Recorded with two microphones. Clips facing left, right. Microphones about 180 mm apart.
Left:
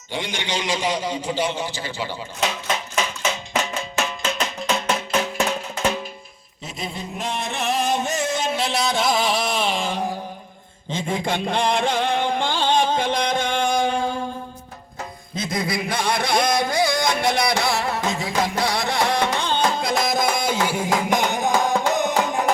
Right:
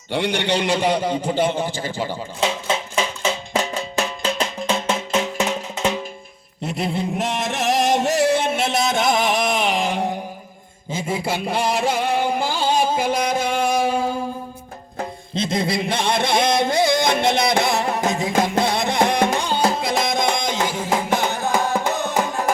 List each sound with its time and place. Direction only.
0.1 s a man's voice: 65° right (ahead or behind); by 2.1 s 45° right (ahead or behind)
2.4 s music: 25° right (ahead or behind)
6.6 s a sound: 65° right (ahead or behind)
8.4 s music: 25° right (ahead or behind); by 14.2 s 5° right (ahead or behind)
15.4 s music: 25° right (ahead or behind); by 22.4 s 15° left (ahead or behind)